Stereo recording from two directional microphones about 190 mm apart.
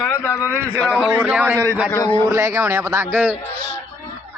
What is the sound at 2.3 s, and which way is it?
A man's voice, 15° right (ahead or behind).